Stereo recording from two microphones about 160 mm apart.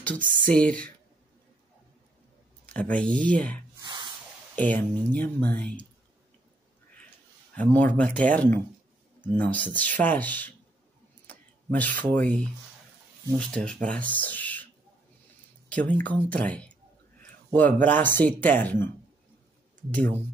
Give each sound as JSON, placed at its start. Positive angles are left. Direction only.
{"t": 0.5, "sound": "speech", "side_deg": 5}
{"t": 2.6, "sound": "speech", "side_deg": 10}
{"t": 3.8, "sound": "a sound", "side_deg": -30}
{"t": 4.6, "sound": "speech", "side_deg": 10}
{"t": 7.5, "sound": "speech", "side_deg": 10}
{"t": 15.7, "sound": "speech", "side_deg": 10}
{"t": 19.9, "sound": "speech", "side_deg": 10}